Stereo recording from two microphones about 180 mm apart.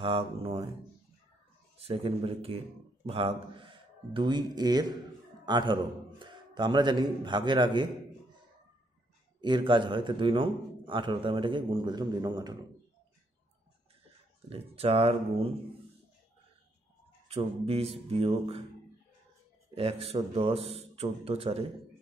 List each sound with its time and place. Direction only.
0.0 s a man's voice: 30° right (ahead or behind)
1.8 s a man's voice: 35° right (ahead or behind)
9.4 s a man's voice: 25° right (ahead or behind)
14.8 s a man's voice: 30° right (ahead or behind)
17.3 s a man's voice: 30° right (ahead or behind)
19.7 s a man's voice: 35° right (ahead or behind)